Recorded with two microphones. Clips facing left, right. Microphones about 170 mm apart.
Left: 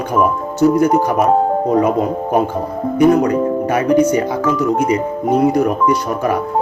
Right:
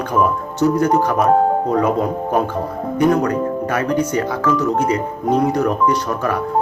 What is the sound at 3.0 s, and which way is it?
Speech, 10° left (ahead or behind).